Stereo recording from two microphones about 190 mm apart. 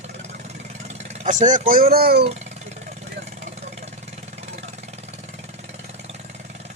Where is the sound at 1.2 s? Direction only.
40° right (ahead or behind).